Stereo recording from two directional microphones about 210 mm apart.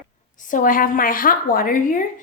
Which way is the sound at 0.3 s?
40° left (ahead or behind).